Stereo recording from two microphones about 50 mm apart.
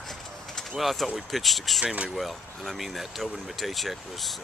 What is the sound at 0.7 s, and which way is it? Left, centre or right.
Speech, centre.